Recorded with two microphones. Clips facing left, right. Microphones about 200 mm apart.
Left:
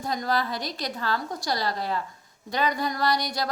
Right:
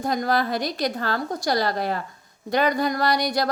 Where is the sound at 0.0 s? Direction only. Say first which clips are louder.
Right 4 dB; 55° right (ahead or behind).